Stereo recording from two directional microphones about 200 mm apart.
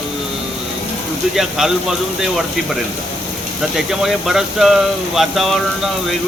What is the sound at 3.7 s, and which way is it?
Speech, centre (ahead or behind).